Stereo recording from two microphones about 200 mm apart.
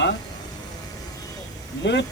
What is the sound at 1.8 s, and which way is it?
Speech, 60° left (ahead or behind).